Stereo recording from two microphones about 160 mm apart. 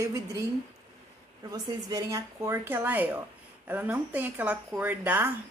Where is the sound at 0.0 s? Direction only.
20° right (ahead or behind).